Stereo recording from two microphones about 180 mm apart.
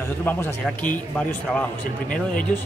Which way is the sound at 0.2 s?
10° left (ahead or behind).